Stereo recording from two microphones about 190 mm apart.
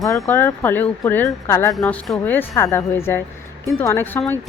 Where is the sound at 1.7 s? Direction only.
Centre (ahead or behind).